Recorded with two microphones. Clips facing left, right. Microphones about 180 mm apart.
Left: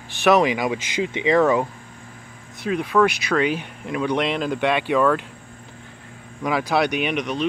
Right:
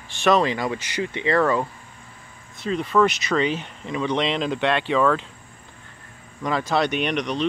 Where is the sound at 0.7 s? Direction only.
90° left.